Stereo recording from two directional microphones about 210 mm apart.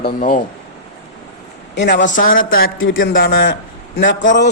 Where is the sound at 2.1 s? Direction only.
40° left (ahead or behind).